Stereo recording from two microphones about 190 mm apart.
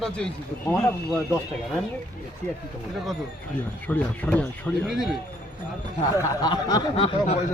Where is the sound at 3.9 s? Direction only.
10° left (ahead or behind).